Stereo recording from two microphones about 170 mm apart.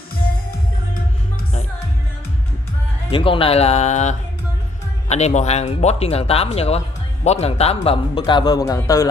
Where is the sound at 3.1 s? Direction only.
30° left (ahead or behind).